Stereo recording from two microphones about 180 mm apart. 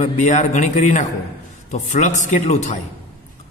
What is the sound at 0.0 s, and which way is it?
A man's voice, 40° left (ahead or behind).